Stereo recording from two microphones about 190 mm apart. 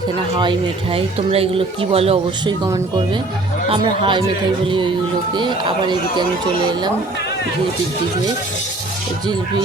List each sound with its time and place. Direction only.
0.9 s speech: 30° right (ahead or behind)
3.7 s speech: 25° right (ahead or behind)